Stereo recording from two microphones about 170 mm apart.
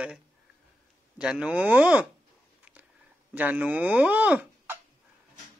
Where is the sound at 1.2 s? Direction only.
5° right (ahead or behind).